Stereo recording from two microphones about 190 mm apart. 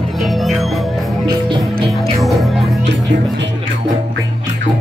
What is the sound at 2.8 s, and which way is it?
Music, 65° right (ahead or behind).